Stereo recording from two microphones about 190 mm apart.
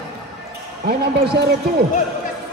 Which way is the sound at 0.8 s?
60° right (ahead or behind).